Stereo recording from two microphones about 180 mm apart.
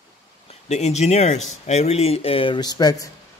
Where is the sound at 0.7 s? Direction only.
40° left (ahead or behind); by 3.1 s 20° left (ahead or behind).